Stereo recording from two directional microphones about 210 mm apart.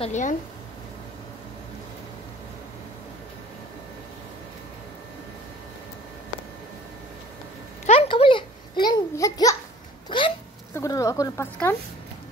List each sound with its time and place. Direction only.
0.0 s speech: 35° left (ahead or behind)
7.8 s babbling: 30° left (ahead or behind)
10.0 s hiccup: 25° left (ahead or behind)
10.7 s speech: 15° left (ahead or behind)